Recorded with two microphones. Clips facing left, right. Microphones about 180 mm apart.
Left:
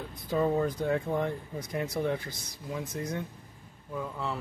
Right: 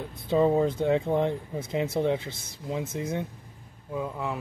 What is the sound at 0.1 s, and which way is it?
A man's voice, 25° right (ahead or behind).